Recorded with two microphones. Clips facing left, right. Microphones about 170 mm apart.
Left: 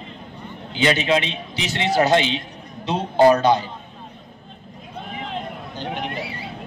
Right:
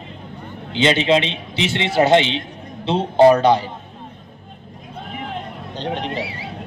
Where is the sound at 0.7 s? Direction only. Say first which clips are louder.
Right 3 dB; 25° right (ahead or behind).